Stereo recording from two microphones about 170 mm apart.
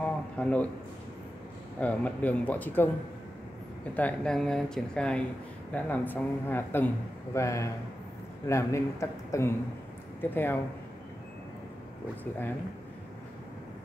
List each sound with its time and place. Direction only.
0.0 s a sound: 5° left (ahead or behind)
1.8 s speech: 10° left (ahead or behind)
3.9 s speech: 5° left (ahead or behind)